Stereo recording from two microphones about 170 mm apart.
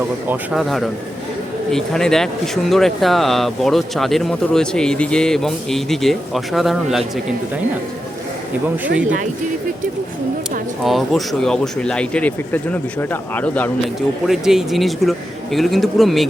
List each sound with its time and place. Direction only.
0.3 s speech: centre (ahead or behind)
10.8 s speech: centre (ahead or behind)
14.3 s speech: 5° right (ahead or behind)